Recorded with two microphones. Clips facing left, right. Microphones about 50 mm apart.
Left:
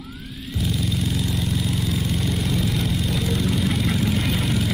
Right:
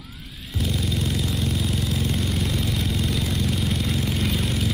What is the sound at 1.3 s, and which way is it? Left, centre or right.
Vehicle, centre.